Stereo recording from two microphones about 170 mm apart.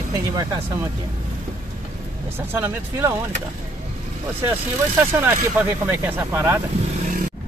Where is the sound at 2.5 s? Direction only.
10° right (ahead or behind).